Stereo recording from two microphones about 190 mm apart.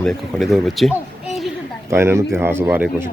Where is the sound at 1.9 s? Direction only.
15° right (ahead or behind).